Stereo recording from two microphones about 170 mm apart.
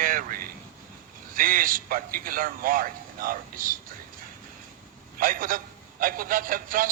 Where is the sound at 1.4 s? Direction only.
55° right (ahead or behind).